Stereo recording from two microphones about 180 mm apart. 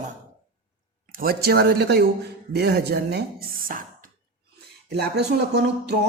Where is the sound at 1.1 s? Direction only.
55° right (ahead or behind).